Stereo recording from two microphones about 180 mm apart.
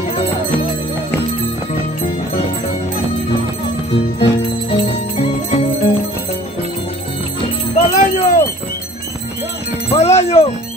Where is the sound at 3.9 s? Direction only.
35° left (ahead or behind).